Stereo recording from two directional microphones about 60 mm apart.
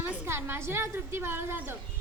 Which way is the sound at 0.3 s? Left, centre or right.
Right.